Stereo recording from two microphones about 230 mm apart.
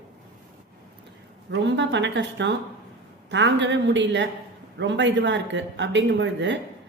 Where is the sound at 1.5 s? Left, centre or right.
Right.